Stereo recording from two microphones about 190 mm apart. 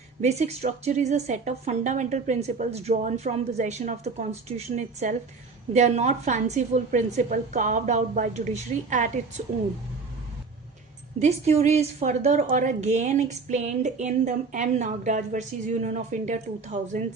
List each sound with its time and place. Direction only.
0.2 s a woman's voice: 35° right (ahead or behind)
11.2 s a woman's voice: 35° right (ahead or behind)